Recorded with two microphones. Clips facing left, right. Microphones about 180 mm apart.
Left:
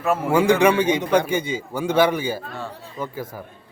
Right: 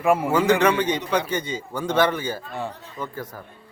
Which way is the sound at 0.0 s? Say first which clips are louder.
Right 2 dB; 10° right (ahead or behind).